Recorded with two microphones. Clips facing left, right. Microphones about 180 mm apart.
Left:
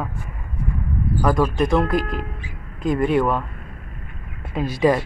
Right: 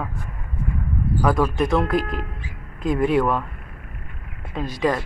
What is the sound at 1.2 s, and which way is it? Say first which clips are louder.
Speech: left 1 dB; centre (ahead or behind).